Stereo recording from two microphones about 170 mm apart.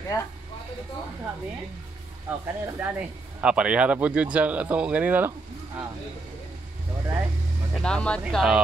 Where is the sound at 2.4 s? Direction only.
15° right (ahead or behind).